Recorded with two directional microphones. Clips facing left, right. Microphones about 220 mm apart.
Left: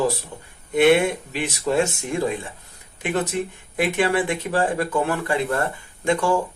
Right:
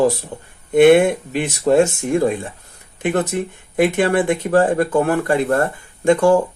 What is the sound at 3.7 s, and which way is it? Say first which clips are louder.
Speech: right 5 dB; 50° right (ahead or behind).